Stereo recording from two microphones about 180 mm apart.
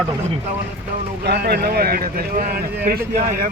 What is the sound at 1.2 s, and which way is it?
Speech, 65° right (ahead or behind).